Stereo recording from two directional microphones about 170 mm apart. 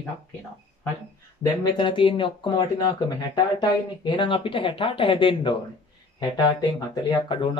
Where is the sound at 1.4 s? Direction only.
25° left (ahead or behind).